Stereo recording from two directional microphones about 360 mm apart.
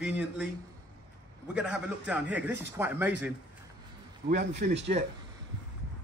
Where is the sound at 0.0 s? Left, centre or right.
Centre.